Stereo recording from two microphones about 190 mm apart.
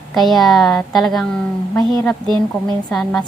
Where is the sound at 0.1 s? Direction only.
Centre (ahead or behind).